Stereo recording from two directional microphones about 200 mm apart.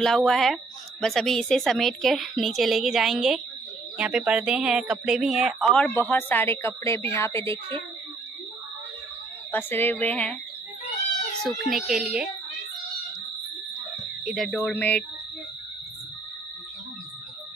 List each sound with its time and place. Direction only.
0.0 s a woman's voice: centre (ahead or behind)
9.5 s speech: 10° left (ahead or behind)
11.4 s a woman's voice: centre (ahead or behind)
14.2 s a woman's voice: centre (ahead or behind)